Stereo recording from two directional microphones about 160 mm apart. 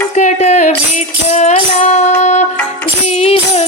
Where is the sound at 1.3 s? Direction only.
45° left (ahead or behind).